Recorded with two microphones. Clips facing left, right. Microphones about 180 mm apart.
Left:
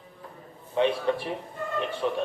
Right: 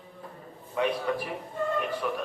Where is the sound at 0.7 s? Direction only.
25° left (ahead or behind).